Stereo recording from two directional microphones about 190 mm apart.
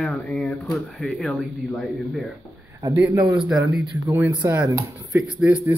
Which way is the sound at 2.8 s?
20° right (ahead or behind).